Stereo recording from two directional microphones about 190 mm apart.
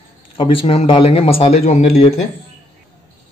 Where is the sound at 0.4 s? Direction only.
25° left (ahead or behind).